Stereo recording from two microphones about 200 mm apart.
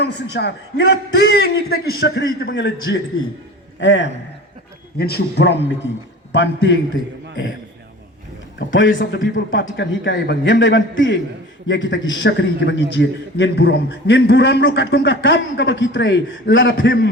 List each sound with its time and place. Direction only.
0.0 s a man's voice: 55° left (ahead or behind)
4.9 s a man's voice: 50° left (ahead or behind)
8.5 s a man's voice: 70° left (ahead or behind)